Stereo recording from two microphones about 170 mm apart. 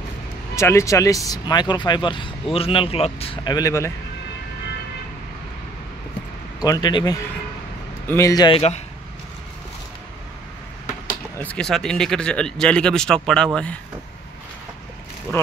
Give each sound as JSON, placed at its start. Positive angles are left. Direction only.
{"t": 0.6, "sound": "a man's voice", "side_deg": 15}
{"t": 6.6, "sound": "speech", "side_deg": 25}
{"t": 11.4, "sound": "speech", "side_deg": 5}
{"t": 15.3, "sound": "speech", "side_deg": 15}